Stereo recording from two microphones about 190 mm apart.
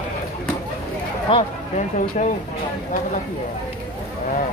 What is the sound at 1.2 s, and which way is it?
Speech, 30° left (ahead or behind).